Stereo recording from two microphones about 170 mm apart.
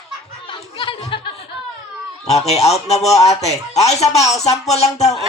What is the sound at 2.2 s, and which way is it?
Speech, 40° left (ahead or behind).